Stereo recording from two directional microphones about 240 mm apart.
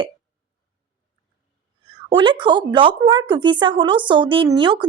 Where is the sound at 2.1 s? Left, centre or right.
Centre.